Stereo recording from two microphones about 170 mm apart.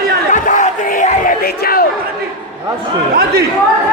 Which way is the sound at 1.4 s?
60° left (ahead or behind).